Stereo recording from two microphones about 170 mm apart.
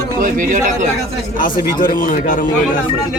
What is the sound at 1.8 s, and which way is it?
Speech, 55° left (ahead or behind).